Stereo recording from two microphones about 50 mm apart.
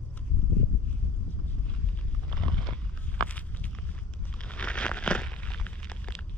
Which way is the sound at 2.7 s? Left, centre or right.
Left.